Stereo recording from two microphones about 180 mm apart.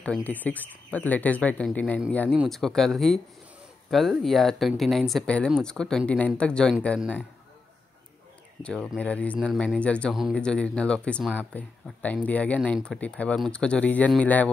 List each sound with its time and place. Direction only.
0.0 s speech: 10° left (ahead or behind)
8.6 s speech: 5° left (ahead or behind)